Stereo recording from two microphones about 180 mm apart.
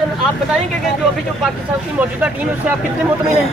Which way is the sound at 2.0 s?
10° right (ahead or behind).